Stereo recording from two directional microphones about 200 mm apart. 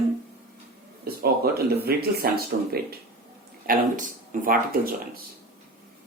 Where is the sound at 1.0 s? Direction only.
50° right (ahead or behind).